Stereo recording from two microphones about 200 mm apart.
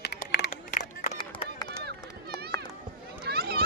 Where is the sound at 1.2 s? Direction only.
20° left (ahead or behind).